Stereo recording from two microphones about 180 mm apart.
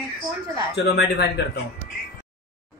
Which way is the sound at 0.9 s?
70° left (ahead or behind).